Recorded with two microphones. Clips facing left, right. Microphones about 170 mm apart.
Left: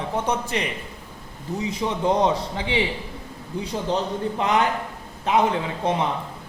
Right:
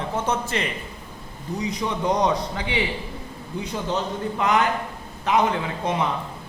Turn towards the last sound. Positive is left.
turn(degrees=30)  # may be behind; listen again after turning